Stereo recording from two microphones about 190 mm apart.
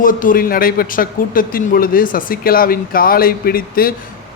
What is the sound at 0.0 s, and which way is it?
Speech, 45° left (ahead or behind).